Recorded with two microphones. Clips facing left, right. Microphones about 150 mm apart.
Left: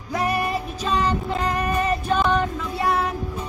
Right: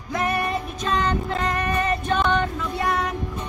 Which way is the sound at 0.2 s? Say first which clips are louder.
Left 1 dB; 35° left (ahead or behind).